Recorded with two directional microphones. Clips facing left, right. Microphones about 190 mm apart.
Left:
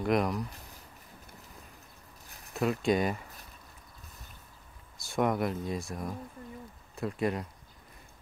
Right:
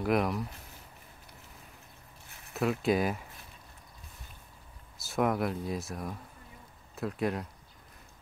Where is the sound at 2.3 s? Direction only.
35° left (ahead or behind).